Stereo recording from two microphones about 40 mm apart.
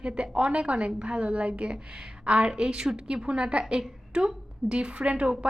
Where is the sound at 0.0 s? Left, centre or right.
Right.